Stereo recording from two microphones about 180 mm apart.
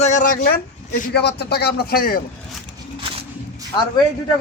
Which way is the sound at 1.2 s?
65° left (ahead or behind).